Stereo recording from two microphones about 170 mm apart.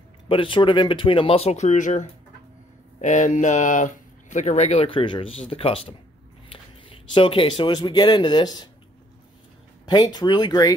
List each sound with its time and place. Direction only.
0.3 s speech: 30° left (ahead or behind)
9.8 s speech: 25° left (ahead or behind)